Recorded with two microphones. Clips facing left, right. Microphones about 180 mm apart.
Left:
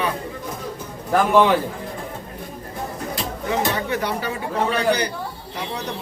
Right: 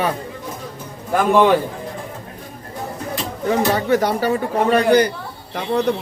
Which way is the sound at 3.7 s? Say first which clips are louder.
Right 7 dB; 40° right (ahead or behind).